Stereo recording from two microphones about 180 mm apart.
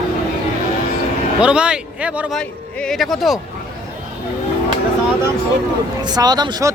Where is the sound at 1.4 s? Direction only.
5° right (ahead or behind).